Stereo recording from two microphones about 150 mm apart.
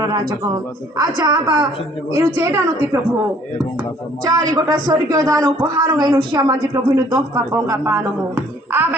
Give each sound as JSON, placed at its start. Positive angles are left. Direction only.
{"t": 0.0, "sound": "speech", "side_deg": -25}
{"t": 4.2, "sound": "speech", "side_deg": -25}